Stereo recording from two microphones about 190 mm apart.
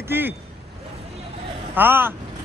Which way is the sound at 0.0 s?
10° right (ahead or behind).